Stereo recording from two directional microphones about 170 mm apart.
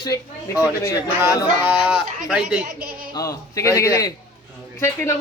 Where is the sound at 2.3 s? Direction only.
5° right (ahead or behind).